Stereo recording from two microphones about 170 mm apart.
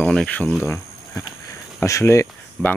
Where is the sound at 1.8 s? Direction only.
15° left (ahead or behind).